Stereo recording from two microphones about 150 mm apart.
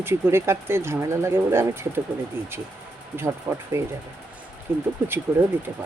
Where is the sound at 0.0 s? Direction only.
15° right (ahead or behind).